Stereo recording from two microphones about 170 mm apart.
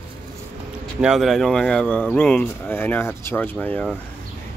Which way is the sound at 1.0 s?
Centre (ahead or behind).